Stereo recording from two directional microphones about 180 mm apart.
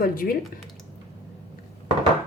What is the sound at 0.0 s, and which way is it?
Speech, 55° left (ahead or behind).